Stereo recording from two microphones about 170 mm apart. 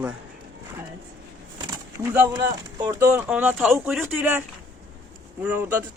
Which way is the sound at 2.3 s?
25° right (ahead or behind).